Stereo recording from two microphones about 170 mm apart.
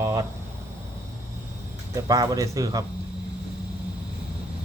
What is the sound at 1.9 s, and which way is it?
Speech, 20° right (ahead or behind).